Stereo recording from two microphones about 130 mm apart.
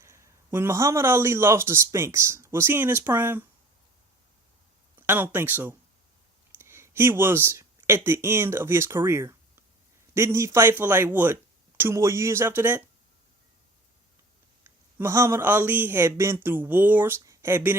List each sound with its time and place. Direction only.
0.0 s a man's voice: 20° right (ahead or behind)
4.9 s a man's voice: 15° right (ahead or behind)
14.6 s speech: 20° right (ahead or behind)